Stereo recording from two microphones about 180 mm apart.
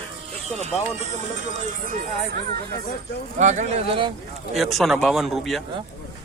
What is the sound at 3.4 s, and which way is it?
Speech, 40° right (ahead or behind).